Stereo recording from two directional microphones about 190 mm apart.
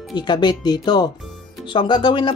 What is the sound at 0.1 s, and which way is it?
Speech, 25° left (ahead or behind).